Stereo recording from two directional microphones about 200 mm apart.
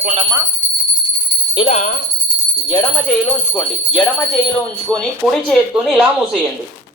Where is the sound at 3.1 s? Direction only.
5° left (ahead or behind).